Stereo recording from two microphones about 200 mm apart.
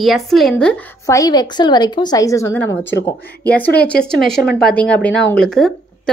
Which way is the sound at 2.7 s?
65° left (ahead or behind).